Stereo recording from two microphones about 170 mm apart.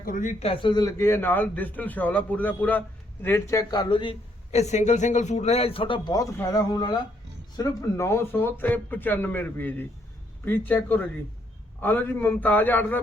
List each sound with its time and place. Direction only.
0.0 s a man's voice: 50° left (ahead or behind); by 13.0 s 10° left (ahead or behind)